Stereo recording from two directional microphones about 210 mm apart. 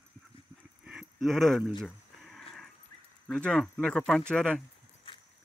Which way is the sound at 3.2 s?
5° left (ahead or behind).